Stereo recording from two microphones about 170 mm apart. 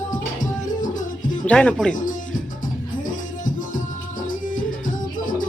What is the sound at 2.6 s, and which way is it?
Music, 50° left (ahead or behind).